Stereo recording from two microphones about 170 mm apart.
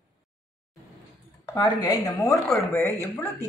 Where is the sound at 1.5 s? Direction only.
20° left (ahead or behind).